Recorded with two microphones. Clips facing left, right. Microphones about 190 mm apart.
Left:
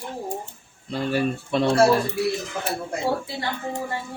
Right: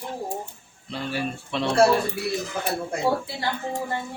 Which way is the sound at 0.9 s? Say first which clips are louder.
Left 5 dB; 45° left (ahead or behind).